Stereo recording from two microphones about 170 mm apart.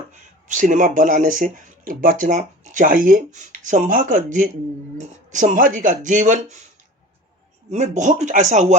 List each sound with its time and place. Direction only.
0.1 s speech: 50° right (ahead or behind)
7.7 s speech: 45° right (ahead or behind)